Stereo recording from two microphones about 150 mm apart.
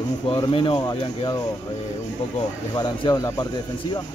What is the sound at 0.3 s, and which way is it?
Speech, 35° left (ahead or behind).